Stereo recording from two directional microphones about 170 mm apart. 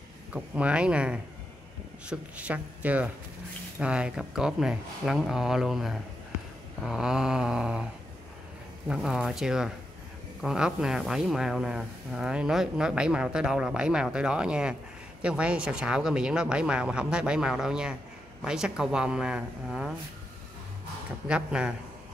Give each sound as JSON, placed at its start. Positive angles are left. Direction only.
{"t": 0.3, "sound": "speech", "side_deg": -5}
{"t": 21.3, "sound": "speech", "side_deg": -5}